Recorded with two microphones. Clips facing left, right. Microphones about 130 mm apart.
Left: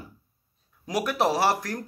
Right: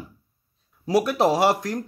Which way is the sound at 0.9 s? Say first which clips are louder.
Right 5 dB; 25° right (ahead or behind).